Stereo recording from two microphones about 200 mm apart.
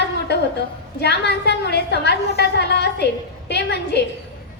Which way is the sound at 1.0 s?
55° left (ahead or behind).